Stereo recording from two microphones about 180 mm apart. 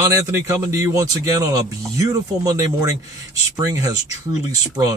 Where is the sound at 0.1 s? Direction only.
20° right (ahead or behind).